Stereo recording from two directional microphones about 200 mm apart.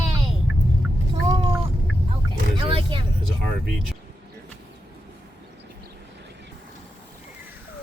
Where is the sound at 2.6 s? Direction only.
25° right (ahead or behind).